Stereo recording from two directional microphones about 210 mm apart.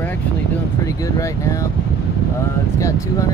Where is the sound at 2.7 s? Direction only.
15° left (ahead or behind).